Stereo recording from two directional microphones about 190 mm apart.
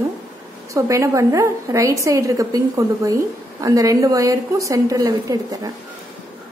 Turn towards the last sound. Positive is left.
turn(degrees=-20)  # may be behind; listen again after turning